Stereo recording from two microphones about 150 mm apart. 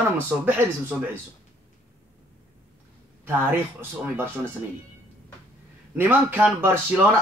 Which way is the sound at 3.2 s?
15° right (ahead or behind).